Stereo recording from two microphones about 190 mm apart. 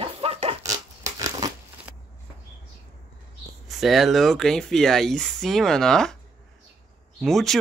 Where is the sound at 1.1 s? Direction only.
20° right (ahead or behind).